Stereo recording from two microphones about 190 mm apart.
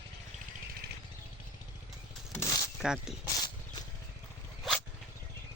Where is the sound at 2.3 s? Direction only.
20° left (ahead or behind).